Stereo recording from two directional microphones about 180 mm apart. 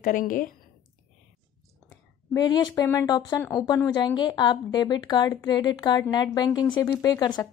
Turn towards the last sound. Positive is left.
turn(degrees=25)  # may be behind; listen again after turning